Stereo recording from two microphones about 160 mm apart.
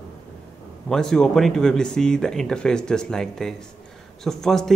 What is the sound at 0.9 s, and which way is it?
Speech, 5° left (ahead or behind).